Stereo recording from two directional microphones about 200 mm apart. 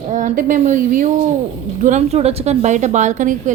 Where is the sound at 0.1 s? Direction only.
40° right (ahead or behind).